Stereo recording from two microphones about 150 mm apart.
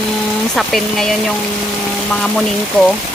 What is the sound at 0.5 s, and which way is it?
Speech, centre (ahead or behind).